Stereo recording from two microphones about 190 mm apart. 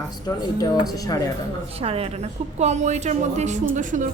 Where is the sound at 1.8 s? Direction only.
30° right (ahead or behind).